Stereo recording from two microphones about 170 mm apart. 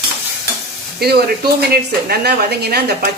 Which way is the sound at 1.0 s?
65° right (ahead or behind).